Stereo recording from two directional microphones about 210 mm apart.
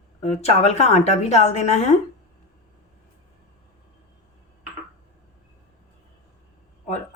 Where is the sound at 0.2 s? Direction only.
30° left (ahead or behind).